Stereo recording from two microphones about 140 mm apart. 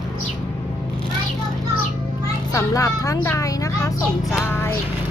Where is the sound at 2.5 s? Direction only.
25° left (ahead or behind).